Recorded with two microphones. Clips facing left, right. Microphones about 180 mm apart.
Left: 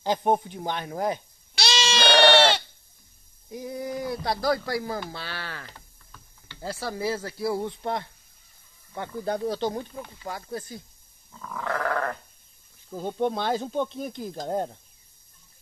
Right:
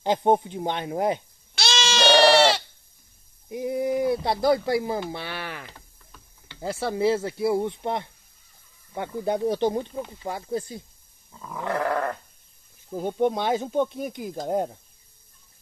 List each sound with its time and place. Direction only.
0.0 s speech: 20° right (ahead or behind)
1.6 s goat: centre (ahead or behind)
3.4 s speech: 20° right (ahead or behind)